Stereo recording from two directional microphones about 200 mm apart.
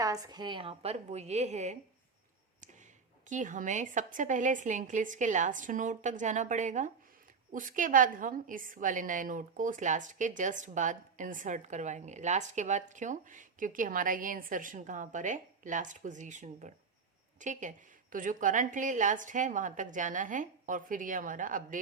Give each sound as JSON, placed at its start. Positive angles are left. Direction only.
{"t": 0.0, "sound": "a woman's voice", "side_deg": -15}
{"t": 3.2, "sound": "a woman's voice", "side_deg": -40}